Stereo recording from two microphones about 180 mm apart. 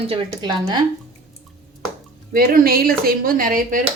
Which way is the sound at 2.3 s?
55° right (ahead or behind).